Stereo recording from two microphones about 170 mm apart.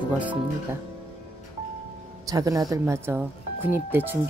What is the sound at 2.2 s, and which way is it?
Speech, 20° right (ahead or behind).